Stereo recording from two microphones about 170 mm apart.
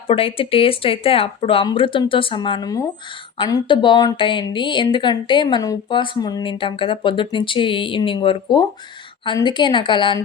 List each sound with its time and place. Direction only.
0.1 s speech: 35° left (ahead or behind)